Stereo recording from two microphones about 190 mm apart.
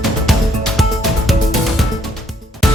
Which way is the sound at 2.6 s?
Centre (ahead or behind).